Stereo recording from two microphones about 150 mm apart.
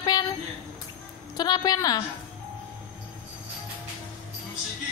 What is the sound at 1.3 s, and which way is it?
Speech, 30° left (ahead or behind).